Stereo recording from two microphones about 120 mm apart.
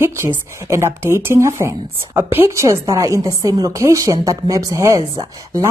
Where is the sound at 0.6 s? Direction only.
25° right (ahead or behind).